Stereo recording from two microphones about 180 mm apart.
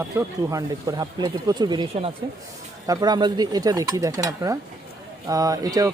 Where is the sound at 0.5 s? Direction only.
20° right (ahead or behind).